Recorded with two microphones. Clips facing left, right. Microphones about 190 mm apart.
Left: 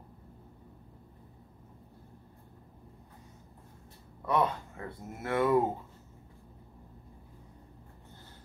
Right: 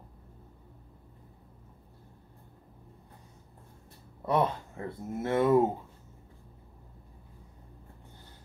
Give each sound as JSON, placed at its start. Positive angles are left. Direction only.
{"t": 4.3, "sound": "speech", "side_deg": -25}